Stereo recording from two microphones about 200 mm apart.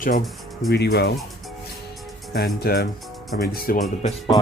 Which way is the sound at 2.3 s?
50° left (ahead or behind).